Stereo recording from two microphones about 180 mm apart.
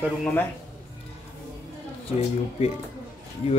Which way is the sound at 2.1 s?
35° left (ahead or behind).